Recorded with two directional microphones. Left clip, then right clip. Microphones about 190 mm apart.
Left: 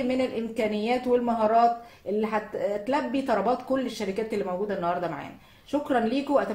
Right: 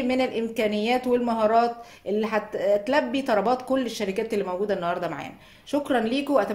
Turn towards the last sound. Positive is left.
turn(degrees=-40)  # may be behind; listen again after turning